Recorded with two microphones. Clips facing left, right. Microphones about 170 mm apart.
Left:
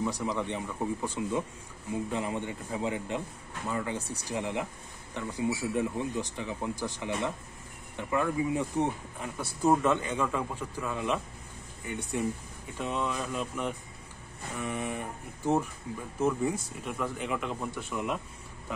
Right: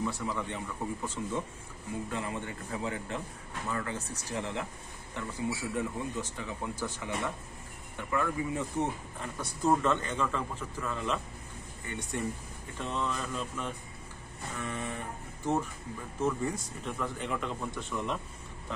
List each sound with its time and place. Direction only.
0.0 s speech: 15° left (ahead or behind)